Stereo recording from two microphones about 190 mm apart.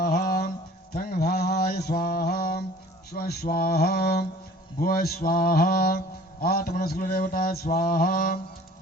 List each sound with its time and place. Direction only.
0.0 s mantra: 55° left (ahead or behind)
3.1 s speech: 55° left (ahead or behind)
4.8 s mantra: 50° left (ahead or behind)